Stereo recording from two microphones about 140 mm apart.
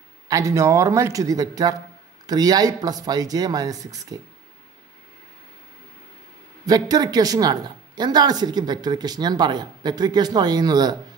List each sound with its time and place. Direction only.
0.3 s speech: 20° right (ahead or behind)
6.6 s speech: 25° right (ahead or behind)